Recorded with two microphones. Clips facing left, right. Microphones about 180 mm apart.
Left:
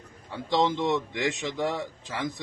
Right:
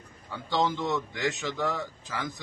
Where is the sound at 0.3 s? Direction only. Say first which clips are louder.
Left 3 dB; 25° left (ahead or behind).